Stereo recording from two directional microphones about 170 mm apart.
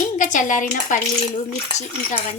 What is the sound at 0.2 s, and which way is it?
Speech, 50° left (ahead or behind).